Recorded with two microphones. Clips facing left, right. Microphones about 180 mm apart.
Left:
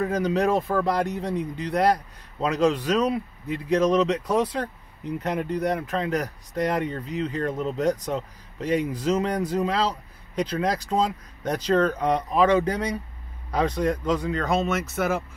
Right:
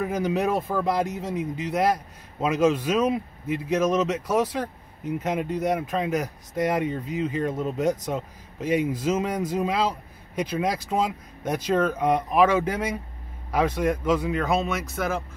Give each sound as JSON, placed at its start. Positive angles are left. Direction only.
{"t": 0.0, "sound": "speech", "side_deg": -10}